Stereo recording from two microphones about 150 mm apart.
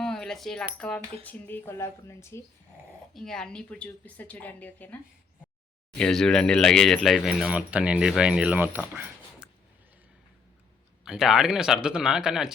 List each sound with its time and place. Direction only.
0.0 s cutlery: 5° left (ahead or behind)
3.2 s cutlery: 5° left (ahead or behind)
6.0 s speech: 5° left (ahead or behind); by 8.8 s 10° right (ahead or behind)
8.9 s a sound: 5° right (ahead or behind)
11.0 s speech: 5° right (ahead or behind)